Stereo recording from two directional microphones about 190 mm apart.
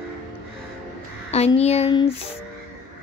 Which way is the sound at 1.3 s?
35° left (ahead or behind).